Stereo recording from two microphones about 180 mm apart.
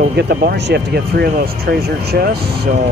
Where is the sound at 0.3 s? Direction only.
65° right (ahead or behind).